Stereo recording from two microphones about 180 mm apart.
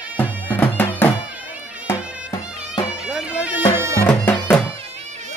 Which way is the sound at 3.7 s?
15° right (ahead or behind).